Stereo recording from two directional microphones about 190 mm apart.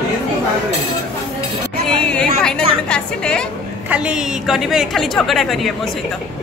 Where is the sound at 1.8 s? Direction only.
5° left (ahead or behind).